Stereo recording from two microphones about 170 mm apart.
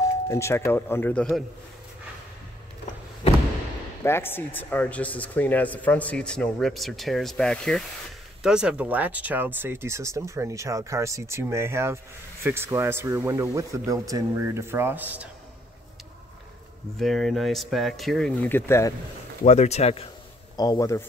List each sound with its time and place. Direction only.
0.3 s speech: 15° left (ahead or behind)
4.0 s speech: 15° left (ahead or behind); by 15.2 s 10° right (ahead or behind)
17.0 s speech: centre (ahead or behind)
19.4 s speech: 40° left (ahead or behind)
20.5 s a man's voice: 20° left (ahead or behind)